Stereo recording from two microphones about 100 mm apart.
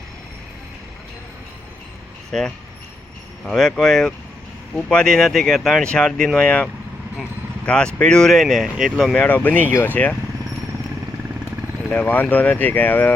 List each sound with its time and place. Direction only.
2.3 s speech: 5° left (ahead or behind)
9.1 s speech: 15° left (ahead or behind)
11.9 s speech: 15° left (ahead or behind)